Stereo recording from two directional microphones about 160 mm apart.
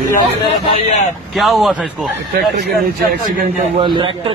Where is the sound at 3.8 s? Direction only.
30° right (ahead or behind).